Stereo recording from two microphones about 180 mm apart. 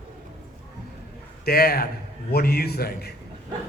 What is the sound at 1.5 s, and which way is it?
A man's voice, 55° left (ahead or behind).